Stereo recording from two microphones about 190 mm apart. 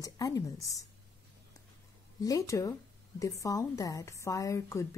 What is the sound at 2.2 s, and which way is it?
Speech, 15° left (ahead or behind).